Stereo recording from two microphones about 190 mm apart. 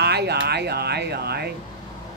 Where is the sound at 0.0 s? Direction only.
60° right (ahead or behind).